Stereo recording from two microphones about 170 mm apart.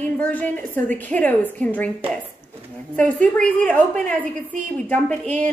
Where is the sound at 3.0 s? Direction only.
10° left (ahead or behind).